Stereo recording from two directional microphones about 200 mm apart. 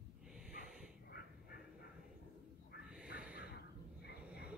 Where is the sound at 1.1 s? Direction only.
50° left (ahead or behind).